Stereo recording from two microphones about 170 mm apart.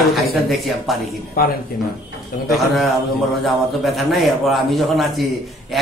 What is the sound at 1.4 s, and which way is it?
Speech, 65° left (ahead or behind).